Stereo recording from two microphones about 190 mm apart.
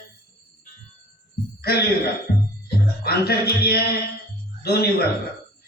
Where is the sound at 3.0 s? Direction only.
55° left (ahead or behind).